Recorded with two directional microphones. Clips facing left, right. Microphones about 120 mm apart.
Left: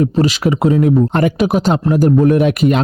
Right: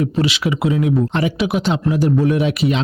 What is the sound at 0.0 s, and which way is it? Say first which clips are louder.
Speech: left 5 dB; 40° left (ahead or behind).